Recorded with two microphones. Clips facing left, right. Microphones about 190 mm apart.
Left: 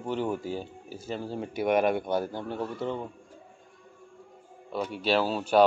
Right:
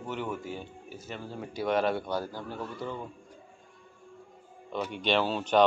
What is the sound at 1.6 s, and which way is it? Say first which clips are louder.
A man's voice: left 3 dB; 20° left (ahead or behind).